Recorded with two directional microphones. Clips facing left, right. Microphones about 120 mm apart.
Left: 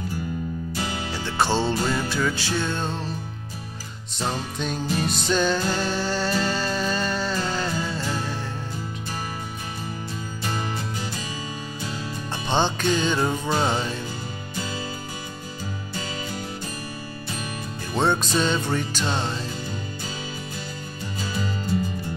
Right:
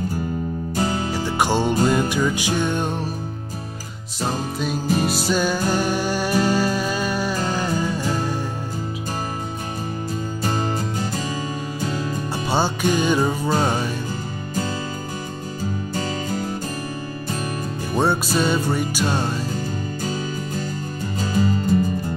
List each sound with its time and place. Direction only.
0.7 s music: 40° right (ahead or behind)
1.2 s music: 15° right (ahead or behind)
4.6 s music: 5° right (ahead or behind)
10.4 s music: 40° right (ahead or behind)
12.4 s music: 10° right (ahead or behind)
17.9 s music: 10° right (ahead or behind)
21.2 s music: 40° right (ahead or behind)